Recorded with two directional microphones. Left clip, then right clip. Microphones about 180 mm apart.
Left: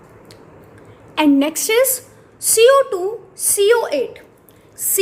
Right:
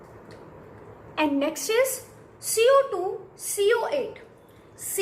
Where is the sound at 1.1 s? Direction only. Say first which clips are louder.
Left 9 dB; 55° left (ahead or behind).